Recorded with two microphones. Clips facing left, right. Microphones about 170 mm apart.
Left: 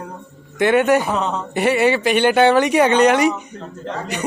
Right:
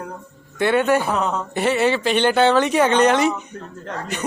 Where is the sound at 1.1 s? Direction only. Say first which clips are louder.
Even; centre (ahead or behind).